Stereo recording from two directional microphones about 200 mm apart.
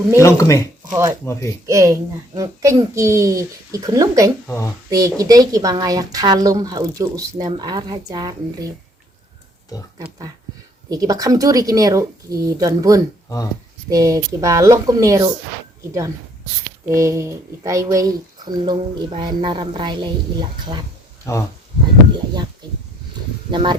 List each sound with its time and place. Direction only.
0.2 s speech: 15° left (ahead or behind)
1.6 s a child's voice: 15° right (ahead or behind)
4.4 s speech: 10° left (ahead or behind)
4.9 s a woman's voice: 15° right (ahead or behind)
10.8 s a child's voice: 20° right (ahead or behind)
16.9 s a child's voice: 15° right (ahead or behind)
21.3 s speech: 15° left (ahead or behind)
23.5 s speech: 25° right (ahead or behind)